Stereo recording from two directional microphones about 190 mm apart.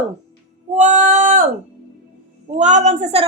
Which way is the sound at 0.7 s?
40° right (ahead or behind).